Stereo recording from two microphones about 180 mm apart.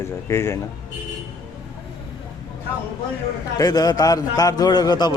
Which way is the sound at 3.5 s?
20° left (ahead or behind).